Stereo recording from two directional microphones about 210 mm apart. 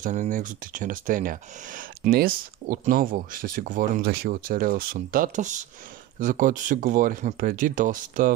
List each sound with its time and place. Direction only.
0.0 s speech: 35° right (ahead or behind)